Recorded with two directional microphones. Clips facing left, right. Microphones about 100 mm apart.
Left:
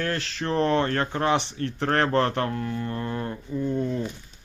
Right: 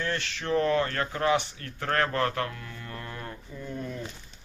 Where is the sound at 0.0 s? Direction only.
40° left (ahead or behind).